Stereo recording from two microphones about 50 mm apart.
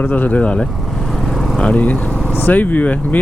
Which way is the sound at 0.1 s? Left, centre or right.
Left.